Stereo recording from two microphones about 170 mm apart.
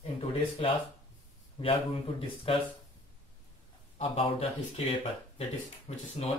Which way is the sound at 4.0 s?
35° left (ahead or behind).